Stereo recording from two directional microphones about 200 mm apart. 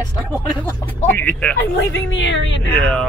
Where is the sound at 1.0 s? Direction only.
10° left (ahead or behind).